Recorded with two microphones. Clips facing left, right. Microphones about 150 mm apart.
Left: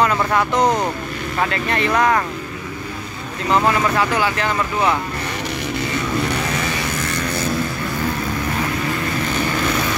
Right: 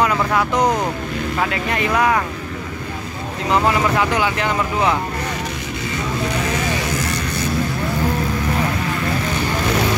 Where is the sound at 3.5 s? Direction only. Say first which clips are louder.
Even; 15° right (ahead or behind).